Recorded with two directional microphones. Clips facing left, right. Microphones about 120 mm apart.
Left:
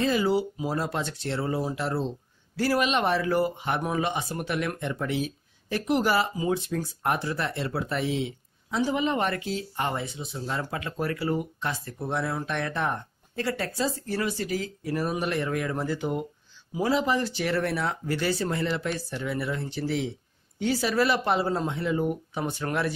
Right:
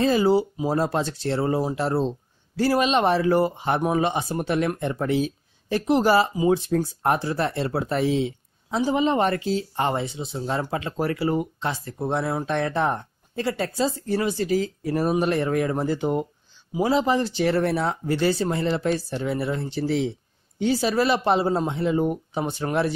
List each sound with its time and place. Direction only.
0.0 s speech: 35° right (ahead or behind)